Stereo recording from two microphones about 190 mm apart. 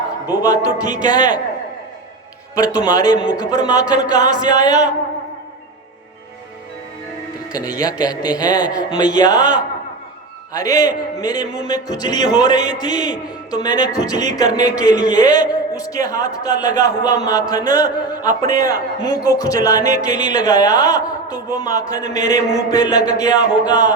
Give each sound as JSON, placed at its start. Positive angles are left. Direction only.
{"t": 0.3, "sound": "a man's voice", "side_deg": 20}
{"t": 2.6, "sound": "a man's voice", "side_deg": 20}
{"t": 7.5, "sound": "a man's voice", "side_deg": 20}
{"t": 10.5, "sound": "a man's voice", "side_deg": 20}